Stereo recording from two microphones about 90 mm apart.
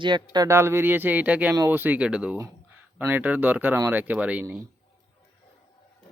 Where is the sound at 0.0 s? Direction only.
55° right (ahead or behind).